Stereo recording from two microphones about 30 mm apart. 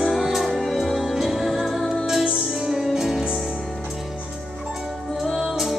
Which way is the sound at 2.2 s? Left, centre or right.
Right.